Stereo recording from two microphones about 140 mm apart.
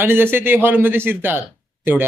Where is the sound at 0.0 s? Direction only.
15° right (ahead or behind).